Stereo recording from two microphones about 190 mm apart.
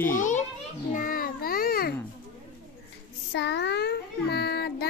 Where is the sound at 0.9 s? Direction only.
45° left (ahead or behind).